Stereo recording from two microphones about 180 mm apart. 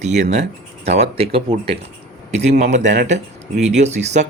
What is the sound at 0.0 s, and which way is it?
Speech, 40° right (ahead or behind).